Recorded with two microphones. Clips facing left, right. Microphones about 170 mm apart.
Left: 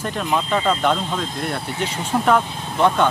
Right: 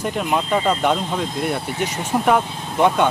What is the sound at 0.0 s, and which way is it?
Speech, 10° right (ahead or behind).